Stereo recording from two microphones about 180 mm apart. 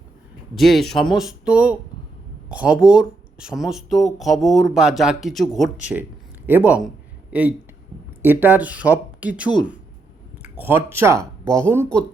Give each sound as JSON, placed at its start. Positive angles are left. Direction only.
{"t": 0.5, "sound": "speech", "side_deg": 0}
{"t": 5.9, "sound": "speech", "side_deg": -10}
{"t": 6.8, "sound": "a sound", "side_deg": -5}
{"t": 8.2, "sound": "speech", "side_deg": -10}
{"t": 10.4, "sound": "a sound", "side_deg": -10}
{"t": 10.9, "sound": "speech", "side_deg": -15}